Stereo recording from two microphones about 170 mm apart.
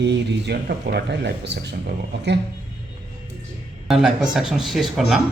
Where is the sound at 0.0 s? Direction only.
80° right.